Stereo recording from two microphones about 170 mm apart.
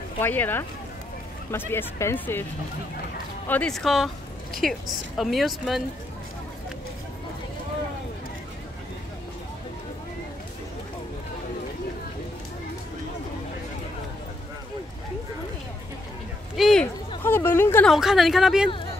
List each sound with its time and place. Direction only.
0.2 s speech: 10° left (ahead or behind)
3.4 s speech: 5° left (ahead or behind)
16.5 s speech: centre (ahead or behind)
17.2 s speech: 15° left (ahead or behind)
17.8 s speech: centre (ahead or behind)